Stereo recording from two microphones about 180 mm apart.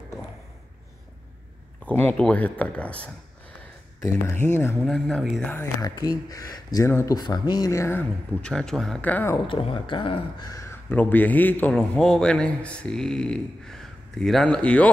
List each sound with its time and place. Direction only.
1.9 s speech: 10° left (ahead or behind)
9.5 s speech: 30° left (ahead or behind)
10.5 s a man's voice: 15° left (ahead or behind)